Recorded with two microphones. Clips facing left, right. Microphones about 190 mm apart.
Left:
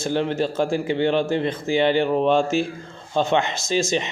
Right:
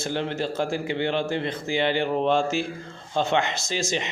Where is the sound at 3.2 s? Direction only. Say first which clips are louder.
Left 3 dB; 20° left (ahead or behind).